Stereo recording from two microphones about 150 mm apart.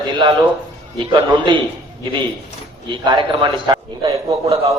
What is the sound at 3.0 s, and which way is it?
A man's voice, 30° right (ahead or behind).